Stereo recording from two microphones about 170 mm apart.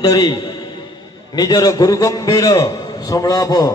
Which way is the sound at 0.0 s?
20° left (ahead or behind).